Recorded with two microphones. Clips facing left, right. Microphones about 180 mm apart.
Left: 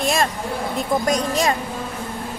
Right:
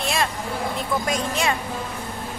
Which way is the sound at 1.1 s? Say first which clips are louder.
Left 4 dB; 40° left (ahead or behind).